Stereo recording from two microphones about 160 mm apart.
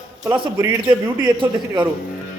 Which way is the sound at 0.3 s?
30° right (ahead or behind).